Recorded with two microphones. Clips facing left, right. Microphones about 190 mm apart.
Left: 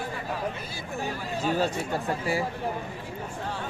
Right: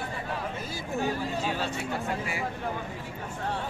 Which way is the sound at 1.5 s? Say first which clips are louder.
Left 4 dB; 40° left (ahead or behind).